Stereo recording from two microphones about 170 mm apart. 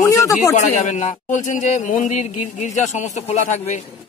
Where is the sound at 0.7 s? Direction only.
45° left (ahead or behind).